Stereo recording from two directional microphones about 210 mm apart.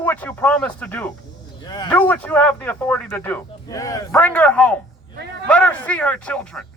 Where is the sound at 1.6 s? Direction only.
20° left (ahead or behind).